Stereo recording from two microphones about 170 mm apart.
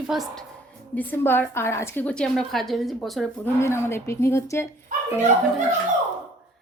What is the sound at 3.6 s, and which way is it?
A woman's voice, 15° left (ahead or behind).